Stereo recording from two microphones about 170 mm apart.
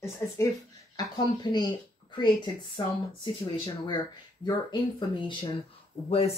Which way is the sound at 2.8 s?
30° left (ahead or behind).